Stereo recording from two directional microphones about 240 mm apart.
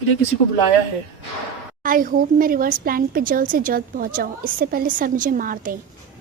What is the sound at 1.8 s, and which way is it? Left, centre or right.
A woman's voice, right.